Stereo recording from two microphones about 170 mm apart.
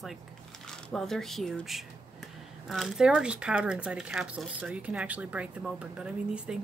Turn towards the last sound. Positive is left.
turn(degrees=-5)  # may be behind; listen again after turning